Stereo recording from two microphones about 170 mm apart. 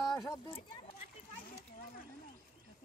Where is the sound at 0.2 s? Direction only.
20° left (ahead or behind).